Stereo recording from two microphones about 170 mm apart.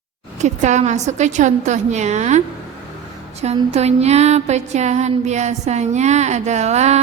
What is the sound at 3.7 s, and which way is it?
A woman's voice, 40° right (ahead or behind).